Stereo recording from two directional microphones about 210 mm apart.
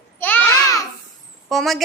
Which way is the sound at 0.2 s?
10° left (ahead or behind).